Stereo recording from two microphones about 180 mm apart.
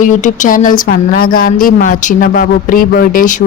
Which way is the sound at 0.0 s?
45° left (ahead or behind).